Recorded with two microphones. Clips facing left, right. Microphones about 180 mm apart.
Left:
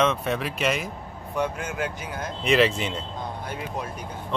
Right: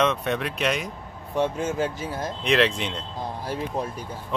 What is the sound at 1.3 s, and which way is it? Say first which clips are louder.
Speech: right 4 dB; 25° right (ahead or behind).